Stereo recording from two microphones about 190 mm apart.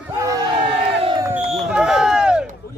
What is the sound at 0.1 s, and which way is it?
Battle cry, 15° right (ahead or behind).